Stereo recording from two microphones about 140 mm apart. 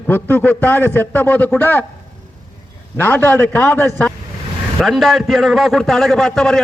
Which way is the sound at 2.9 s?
15° left (ahead or behind).